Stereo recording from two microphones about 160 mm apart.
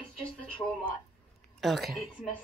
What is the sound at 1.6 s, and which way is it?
Speech, centre (ahead or behind).